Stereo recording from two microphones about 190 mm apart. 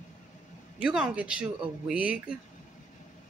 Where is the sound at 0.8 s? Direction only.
5° right (ahead or behind).